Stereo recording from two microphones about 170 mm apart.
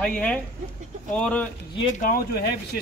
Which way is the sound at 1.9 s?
55° left (ahead or behind).